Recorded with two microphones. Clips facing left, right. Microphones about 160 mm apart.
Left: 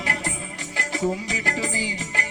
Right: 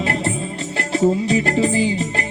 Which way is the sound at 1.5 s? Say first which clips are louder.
Right 11 dB; 25° right (ahead or behind).